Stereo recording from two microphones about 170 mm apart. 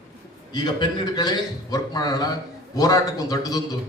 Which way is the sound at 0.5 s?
25° left (ahead or behind).